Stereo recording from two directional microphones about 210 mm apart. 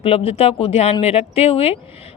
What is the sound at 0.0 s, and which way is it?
Speech, 25° left (ahead or behind).